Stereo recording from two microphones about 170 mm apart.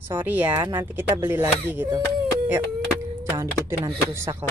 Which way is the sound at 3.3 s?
15° right (ahead or behind).